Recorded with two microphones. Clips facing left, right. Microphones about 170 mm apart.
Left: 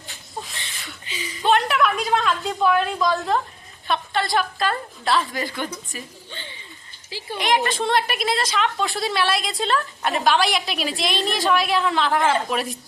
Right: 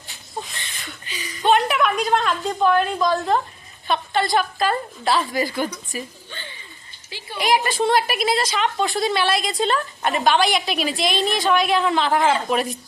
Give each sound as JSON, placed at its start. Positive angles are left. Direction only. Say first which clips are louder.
{"t": 0.4, "sound": "a sound", "louder": "right 1 dB", "side_deg": 0}
{"t": 1.0, "sound": "chuckle", "louder": "left 3 dB", "side_deg": 25}
{"t": 1.4, "sound": "a woman's voice", "louder": "right 1 dB", "side_deg": 0}
{"t": 7.3, "sound": "a woman's voice", "louder": "right 2 dB", "side_deg": -5}